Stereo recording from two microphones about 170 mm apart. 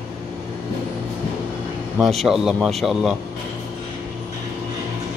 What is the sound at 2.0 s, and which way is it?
Speech, centre (ahead or behind).